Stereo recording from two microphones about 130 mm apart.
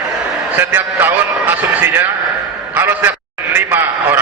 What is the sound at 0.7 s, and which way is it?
Speech, 15° right (ahead or behind).